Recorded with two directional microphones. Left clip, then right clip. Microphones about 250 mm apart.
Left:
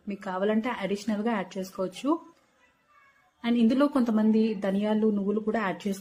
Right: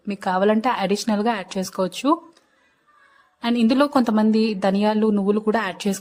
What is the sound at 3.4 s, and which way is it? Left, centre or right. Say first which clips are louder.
A woman's voice: right 6 dB; right.